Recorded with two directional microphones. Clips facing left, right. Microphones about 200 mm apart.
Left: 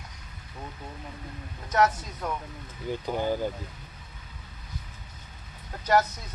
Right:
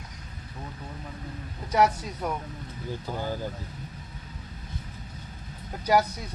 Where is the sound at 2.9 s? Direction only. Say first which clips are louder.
Left 5 dB; 20° left (ahead or behind).